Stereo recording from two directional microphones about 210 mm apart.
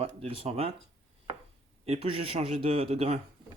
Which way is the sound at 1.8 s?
30° right (ahead or behind).